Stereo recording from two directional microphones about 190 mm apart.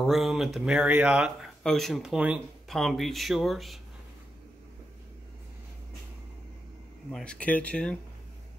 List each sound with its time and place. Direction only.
0.0 s speech: centre (ahead or behind)
7.1 s speech: 5° left (ahead or behind)